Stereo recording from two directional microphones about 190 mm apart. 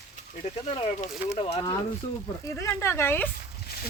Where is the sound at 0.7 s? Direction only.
30° left (ahead or behind).